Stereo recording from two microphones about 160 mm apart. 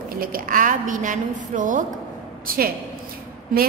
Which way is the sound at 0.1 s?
65° right (ahead or behind).